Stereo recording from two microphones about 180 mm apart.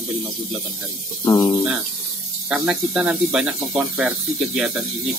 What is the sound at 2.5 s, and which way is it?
Speech, 5° right (ahead or behind).